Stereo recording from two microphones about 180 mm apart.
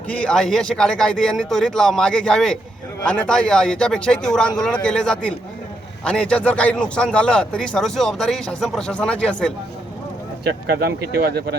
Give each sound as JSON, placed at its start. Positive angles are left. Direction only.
{"t": 0.1, "sound": "a man's voice", "side_deg": 5}
{"t": 10.8, "sound": "speech", "side_deg": -60}